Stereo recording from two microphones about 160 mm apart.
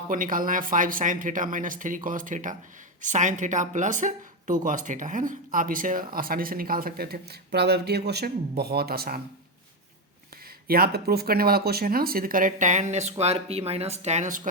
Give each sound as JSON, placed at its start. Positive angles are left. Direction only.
{"t": 0.1, "sound": "speech", "side_deg": -55}
{"t": 10.7, "sound": "speech", "side_deg": -70}